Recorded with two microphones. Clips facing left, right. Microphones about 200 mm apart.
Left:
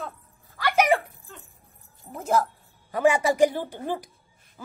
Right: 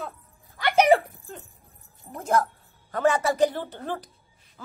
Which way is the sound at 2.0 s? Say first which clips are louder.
Even; centre (ahead or behind).